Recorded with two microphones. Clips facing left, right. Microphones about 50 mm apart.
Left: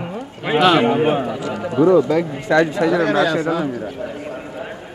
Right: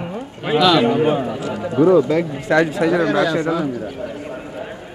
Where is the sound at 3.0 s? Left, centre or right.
Left.